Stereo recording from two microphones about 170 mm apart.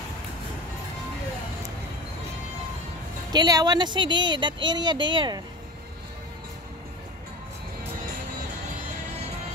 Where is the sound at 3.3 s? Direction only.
25° right (ahead or behind).